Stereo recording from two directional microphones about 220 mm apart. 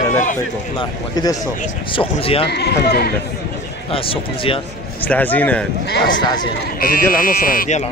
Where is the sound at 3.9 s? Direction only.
25° left (ahead or behind).